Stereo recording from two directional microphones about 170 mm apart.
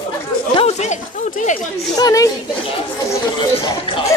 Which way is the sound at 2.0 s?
20° left (ahead or behind).